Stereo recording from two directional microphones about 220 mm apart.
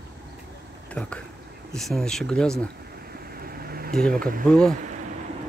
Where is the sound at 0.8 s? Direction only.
5° left (ahead or behind).